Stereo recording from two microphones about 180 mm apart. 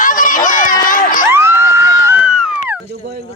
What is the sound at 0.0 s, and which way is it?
Crowd, 45° left (ahead or behind).